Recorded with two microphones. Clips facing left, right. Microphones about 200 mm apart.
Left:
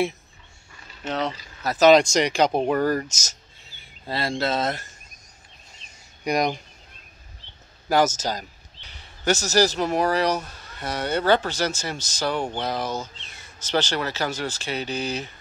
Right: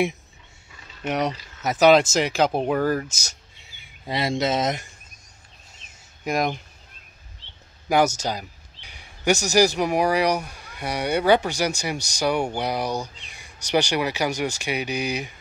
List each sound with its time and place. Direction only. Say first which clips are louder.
1.0 s speech: right 2 dB; 15° right (ahead or behind)
1.9 s speech: left 1 dB; 5° right (ahead or behind)
5.9 s a sound: left 2 dB; centre (ahead or behind)
7.9 s a man's voice: right 1 dB; 10° right (ahead or behind)